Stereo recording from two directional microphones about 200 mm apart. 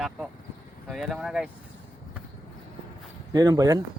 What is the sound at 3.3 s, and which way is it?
Speech, 20° right (ahead or behind).